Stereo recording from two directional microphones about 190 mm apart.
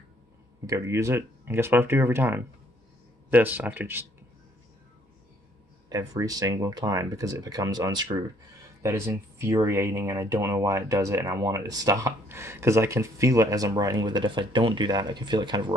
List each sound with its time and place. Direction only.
0.7 s speech: 15° right (ahead or behind)
5.9 s speech: 20° right (ahead or behind)